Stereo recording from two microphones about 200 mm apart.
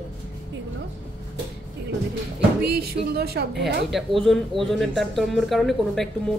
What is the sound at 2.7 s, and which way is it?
Speech, 50° right (ahead or behind).